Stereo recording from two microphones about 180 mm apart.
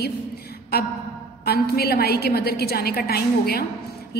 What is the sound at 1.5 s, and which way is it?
A woman's voice, 60° left (ahead or behind).